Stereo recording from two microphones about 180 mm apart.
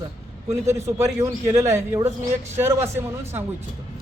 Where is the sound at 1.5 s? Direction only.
15° right (ahead or behind).